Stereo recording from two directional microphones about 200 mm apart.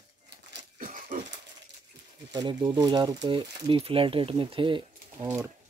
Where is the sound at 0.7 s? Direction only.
40° right (ahead or behind).